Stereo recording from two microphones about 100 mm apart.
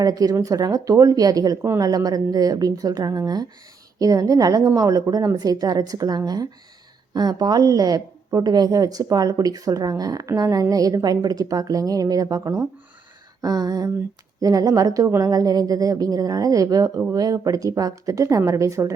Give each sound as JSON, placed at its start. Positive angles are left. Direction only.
{"t": 0.0, "sound": "a woman's voice", "side_deg": -40}